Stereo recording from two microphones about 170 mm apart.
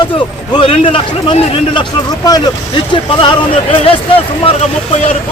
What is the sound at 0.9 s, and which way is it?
Speech, 30° left (ahead or behind).